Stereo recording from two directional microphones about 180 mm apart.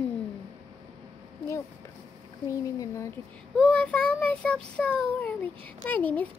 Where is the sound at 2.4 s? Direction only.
20° left (ahead or behind).